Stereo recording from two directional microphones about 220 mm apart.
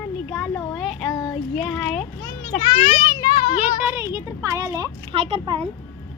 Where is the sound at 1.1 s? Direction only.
15° left (ahead or behind).